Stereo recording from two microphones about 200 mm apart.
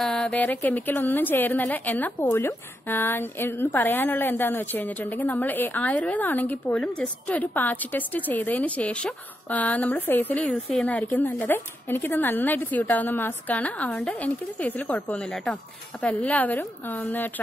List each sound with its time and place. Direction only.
0.0 s a woman's voice: 5° left (ahead or behind)